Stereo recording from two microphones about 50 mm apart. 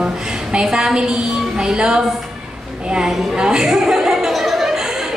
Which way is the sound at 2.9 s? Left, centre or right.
Centre.